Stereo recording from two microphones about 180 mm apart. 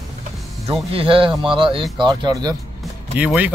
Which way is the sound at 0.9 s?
30° right (ahead or behind).